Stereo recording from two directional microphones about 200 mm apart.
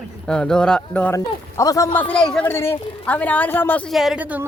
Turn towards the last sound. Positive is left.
turn(degrees=-5)  # may be behind; listen again after turning